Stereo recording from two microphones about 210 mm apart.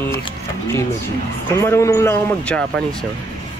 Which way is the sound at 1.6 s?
15° left (ahead or behind).